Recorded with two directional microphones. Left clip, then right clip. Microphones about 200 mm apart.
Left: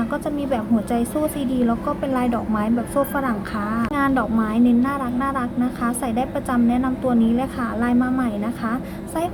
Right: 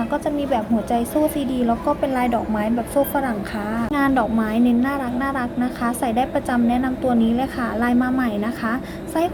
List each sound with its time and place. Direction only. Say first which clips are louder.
0.1 s a woman's voice: right 2 dB; 5° left (ahead or behind)